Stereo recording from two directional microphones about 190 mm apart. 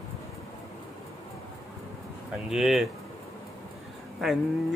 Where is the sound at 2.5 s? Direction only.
Centre (ahead or behind).